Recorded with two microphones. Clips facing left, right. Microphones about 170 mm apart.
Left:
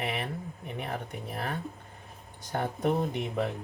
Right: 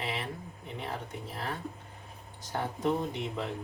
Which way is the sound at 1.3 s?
60° left (ahead or behind).